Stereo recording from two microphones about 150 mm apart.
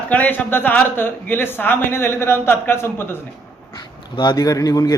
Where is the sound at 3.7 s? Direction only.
25° left (ahead or behind).